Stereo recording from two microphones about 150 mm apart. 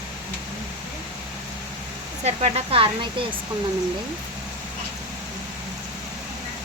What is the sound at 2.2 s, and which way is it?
Speech, 45° right (ahead or behind).